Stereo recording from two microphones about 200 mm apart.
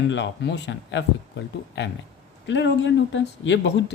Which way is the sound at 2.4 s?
65° left (ahead or behind).